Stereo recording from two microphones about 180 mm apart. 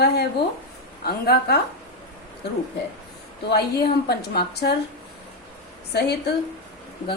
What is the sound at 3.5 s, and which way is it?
A woman's voice, 65° left (ahead or behind).